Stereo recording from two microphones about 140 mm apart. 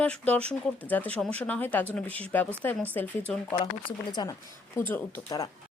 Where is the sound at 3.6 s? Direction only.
35° left (ahead or behind).